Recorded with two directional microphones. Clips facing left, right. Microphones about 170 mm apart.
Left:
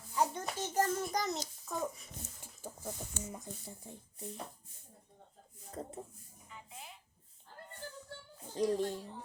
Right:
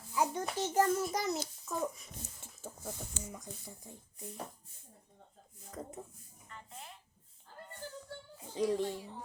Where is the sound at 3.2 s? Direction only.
25° left (ahead or behind).